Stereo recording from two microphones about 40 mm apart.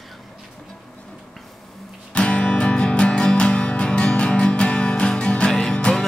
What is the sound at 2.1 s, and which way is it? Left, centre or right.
Music, left.